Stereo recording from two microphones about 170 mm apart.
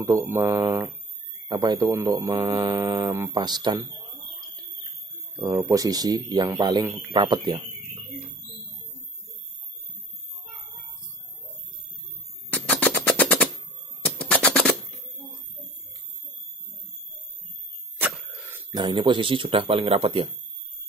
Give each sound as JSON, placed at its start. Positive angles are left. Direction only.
{"t": 0.0, "sound": "speech", "side_deg": -15}
{"t": 1.5, "sound": "speech", "side_deg": -25}
{"t": 5.4, "sound": "speech", "side_deg": -25}
{"t": 12.6, "sound": "music", "side_deg": 10}
{"t": 14.3, "sound": "a sound", "side_deg": 5}
{"t": 18.0, "sound": "vehicle", "side_deg": -10}
{"t": 18.7, "sound": "speech", "side_deg": -25}